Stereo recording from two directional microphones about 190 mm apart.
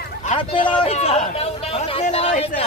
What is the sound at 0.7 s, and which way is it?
Speech, 30° left (ahead or behind).